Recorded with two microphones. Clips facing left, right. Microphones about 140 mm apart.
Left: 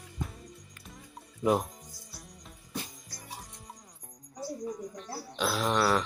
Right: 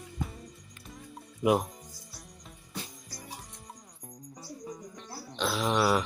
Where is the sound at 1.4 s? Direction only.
5° right (ahead or behind).